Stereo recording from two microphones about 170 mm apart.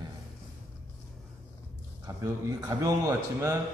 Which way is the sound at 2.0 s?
20° right (ahead or behind).